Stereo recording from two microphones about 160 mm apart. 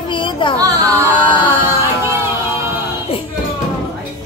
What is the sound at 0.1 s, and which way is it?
Music, 30° left (ahead or behind).